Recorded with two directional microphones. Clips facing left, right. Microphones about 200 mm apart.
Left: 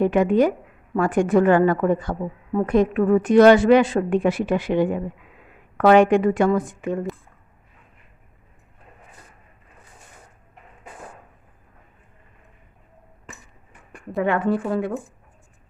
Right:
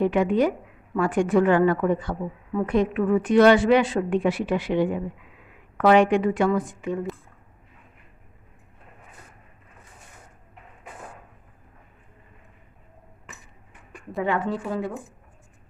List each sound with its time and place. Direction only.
0.0 s a woman's voice: 45° left (ahead or behind)
14.2 s speech: 55° left (ahead or behind)